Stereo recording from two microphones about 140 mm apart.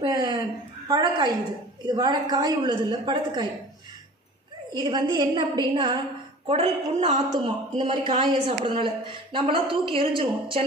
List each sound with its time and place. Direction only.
0.0 s a sound: 30° right (ahead or behind)
0.8 s a woman's voice: 25° right (ahead or behind)
4.7 s a woman's voice: 30° right (ahead or behind); by 7.2 s 45° right (ahead or behind)
7.2 s a woman's voice: 35° right (ahead or behind)
7.8 s a woman's voice: 45° right (ahead or behind)